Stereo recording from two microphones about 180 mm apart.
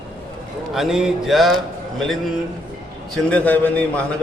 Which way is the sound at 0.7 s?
Centre (ahead or behind).